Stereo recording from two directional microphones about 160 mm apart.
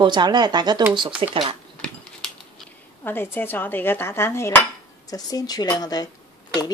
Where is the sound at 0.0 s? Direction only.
25° right (ahead or behind).